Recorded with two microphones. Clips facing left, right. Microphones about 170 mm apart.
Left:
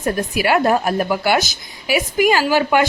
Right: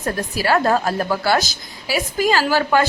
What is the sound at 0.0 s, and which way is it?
A woman's voice, 20° left (ahead or behind).